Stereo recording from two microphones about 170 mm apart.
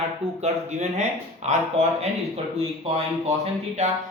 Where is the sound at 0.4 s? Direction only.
40° right (ahead or behind).